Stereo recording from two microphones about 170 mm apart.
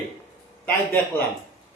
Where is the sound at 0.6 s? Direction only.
10° left (ahead or behind).